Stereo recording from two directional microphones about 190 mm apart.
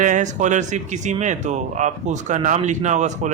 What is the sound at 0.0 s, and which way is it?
A man's voice, 40° right (ahead or behind).